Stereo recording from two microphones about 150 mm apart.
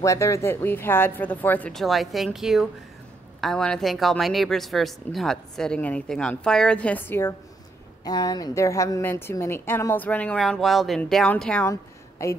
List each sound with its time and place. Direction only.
0.0 s a woman's voice: 20° left (ahead or behind)
8.0 s a woman's voice: 25° left (ahead or behind); by 11.6 s 5° left (ahead or behind)
11.6 s a woman's voice: 20° left (ahead or behind)